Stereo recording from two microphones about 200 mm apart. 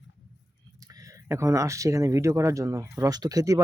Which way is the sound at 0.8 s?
15° right (ahead or behind).